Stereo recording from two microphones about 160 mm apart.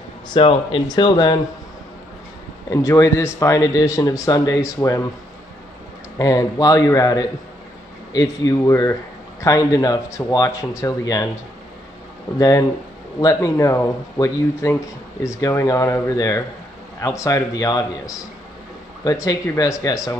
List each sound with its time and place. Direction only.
0.3 s speech: 35° left (ahead or behind)
2.7 s speech: 20° left (ahead or behind)
6.1 s speech: 20° left (ahead or behind)
12.4 s speech: 20° left (ahead or behind)